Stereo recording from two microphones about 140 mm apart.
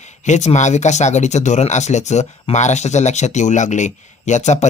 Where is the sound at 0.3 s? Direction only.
55° left (ahead or behind).